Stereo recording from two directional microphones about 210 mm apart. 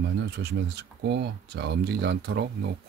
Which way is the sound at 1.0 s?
55° right (ahead or behind).